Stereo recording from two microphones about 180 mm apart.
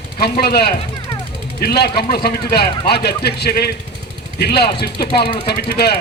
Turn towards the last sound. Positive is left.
turn(degrees=60)  # may be behind; listen again after turning